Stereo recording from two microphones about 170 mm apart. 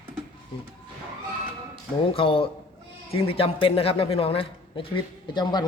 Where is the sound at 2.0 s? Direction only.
30° left (ahead or behind).